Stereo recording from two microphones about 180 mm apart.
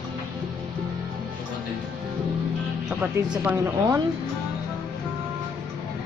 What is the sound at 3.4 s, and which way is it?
Speech, 15° right (ahead or behind).